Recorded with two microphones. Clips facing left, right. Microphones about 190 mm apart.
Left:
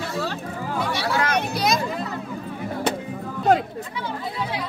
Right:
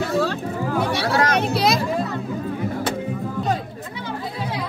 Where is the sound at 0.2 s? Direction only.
55° right (ahead or behind).